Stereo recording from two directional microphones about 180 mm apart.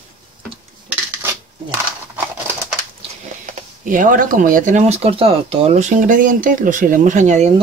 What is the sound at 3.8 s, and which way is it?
Speech, 45° right (ahead or behind).